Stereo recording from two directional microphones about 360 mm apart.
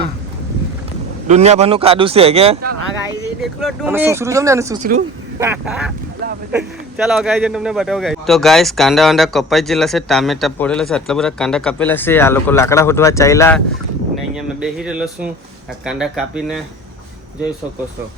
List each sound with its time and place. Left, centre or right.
1.3 s speech: centre
4.8 s speech: centre
5.4 s speech: centre